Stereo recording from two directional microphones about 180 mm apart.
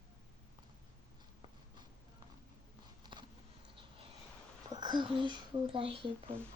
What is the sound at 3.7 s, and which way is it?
Vehicle, 30° right (ahead or behind).